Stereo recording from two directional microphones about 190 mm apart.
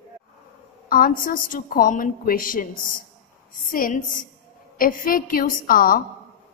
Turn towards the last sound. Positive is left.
turn(degrees=50)  # may be behind; listen again after turning